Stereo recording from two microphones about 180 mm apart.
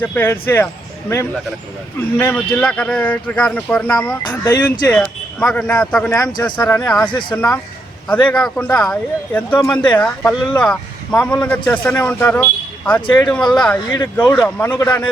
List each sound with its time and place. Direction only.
0.0 s a man's voice: 10° left (ahead or behind)
2.1 s a man's voice: 10° left (ahead or behind)
4.2 s speech: 25° left (ahead or behind)
4.6 s speech: 5° left (ahead or behind)
6.1 s speech: 20° left (ahead or behind)
6.4 s a man's voice: 10° left (ahead or behind)
7.1 s speech: 25° left (ahead or behind)
8.3 s a man's voice: 5° left (ahead or behind)
13.9 s speech: 20° left (ahead or behind)
14.3 s a man's voice: 5° left (ahead or behind)
14.7 s a man's voice: 20° left (ahead or behind)